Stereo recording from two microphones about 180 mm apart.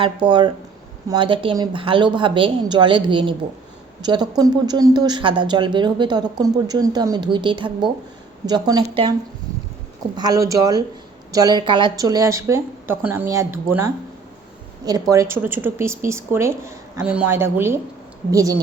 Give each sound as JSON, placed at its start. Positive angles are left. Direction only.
{"t": 0.0, "sound": "speech", "side_deg": -25}
{"t": 10.2, "sound": "speech", "side_deg": -20}
{"t": 15.1, "sound": "speech", "side_deg": -15}